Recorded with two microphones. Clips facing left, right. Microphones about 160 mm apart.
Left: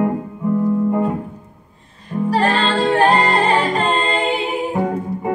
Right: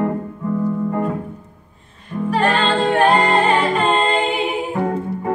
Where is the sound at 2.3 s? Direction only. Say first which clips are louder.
Even; 35° left (ahead or behind).